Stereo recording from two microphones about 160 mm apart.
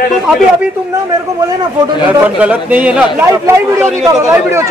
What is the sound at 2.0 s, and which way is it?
A man's voice, 10° right (ahead or behind).